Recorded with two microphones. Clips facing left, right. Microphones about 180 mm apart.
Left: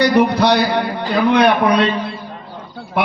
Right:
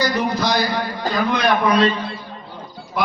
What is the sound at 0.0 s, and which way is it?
A man's voice, 65° left (ahead or behind).